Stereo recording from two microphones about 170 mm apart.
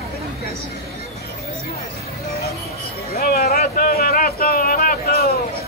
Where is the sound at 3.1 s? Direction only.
65° left (ahead or behind).